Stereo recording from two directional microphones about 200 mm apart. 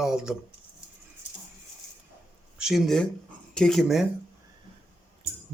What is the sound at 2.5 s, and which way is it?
Speech, centre (ahead or behind).